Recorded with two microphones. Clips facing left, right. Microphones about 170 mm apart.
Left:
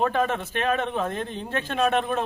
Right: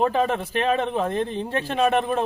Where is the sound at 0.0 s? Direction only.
15° right (ahead or behind).